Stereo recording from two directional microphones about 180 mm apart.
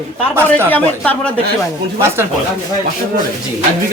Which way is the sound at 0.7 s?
10° left (ahead or behind).